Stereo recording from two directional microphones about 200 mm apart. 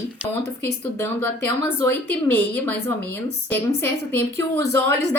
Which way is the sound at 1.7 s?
10° left (ahead or behind).